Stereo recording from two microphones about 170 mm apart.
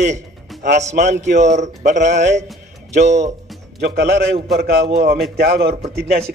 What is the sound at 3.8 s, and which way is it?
A man's voice, 70° right (ahead or behind).